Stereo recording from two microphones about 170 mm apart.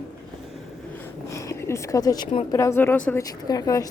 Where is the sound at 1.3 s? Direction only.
15° left (ahead or behind).